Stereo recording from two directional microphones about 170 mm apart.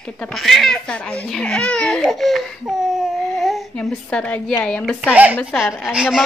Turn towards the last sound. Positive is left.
turn(degrees=-5)  # may be behind; listen again after turning